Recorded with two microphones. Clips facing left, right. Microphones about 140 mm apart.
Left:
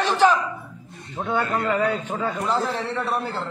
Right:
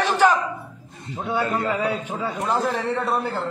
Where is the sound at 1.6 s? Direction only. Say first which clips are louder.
Left 1 dB; 10° right (ahead or behind).